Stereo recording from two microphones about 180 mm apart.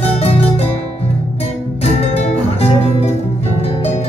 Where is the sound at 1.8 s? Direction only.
35° left (ahead or behind).